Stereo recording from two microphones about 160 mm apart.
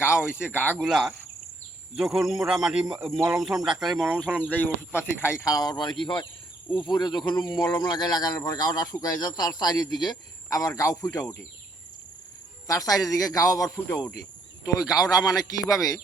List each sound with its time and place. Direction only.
0.0 s speech: 15° left (ahead or behind)
0.9 s speech: centre (ahead or behind); by 11.3 s 20° left (ahead or behind)
12.6 s speech: 20° left (ahead or behind)
15.0 s speech: centre (ahead or behind)
15.4 s speech: 20° left (ahead or behind)